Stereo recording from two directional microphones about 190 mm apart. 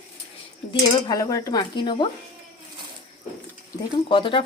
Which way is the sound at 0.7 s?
20° left (ahead or behind).